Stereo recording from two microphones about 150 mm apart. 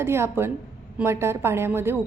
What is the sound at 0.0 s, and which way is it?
A woman's voice, 15° right (ahead or behind).